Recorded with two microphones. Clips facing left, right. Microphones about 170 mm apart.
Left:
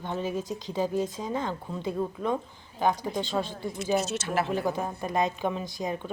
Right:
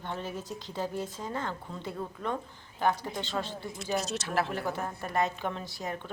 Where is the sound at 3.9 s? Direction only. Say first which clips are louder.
Left 3 dB; centre (ahead or behind).